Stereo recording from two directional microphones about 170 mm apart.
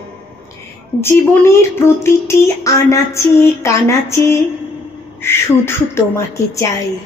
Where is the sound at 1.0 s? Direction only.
15° left (ahead or behind).